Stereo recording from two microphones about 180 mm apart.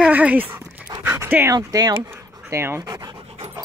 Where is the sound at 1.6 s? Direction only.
20° right (ahead or behind).